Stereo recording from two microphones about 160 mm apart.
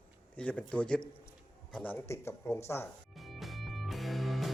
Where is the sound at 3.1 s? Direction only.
Centre (ahead or behind).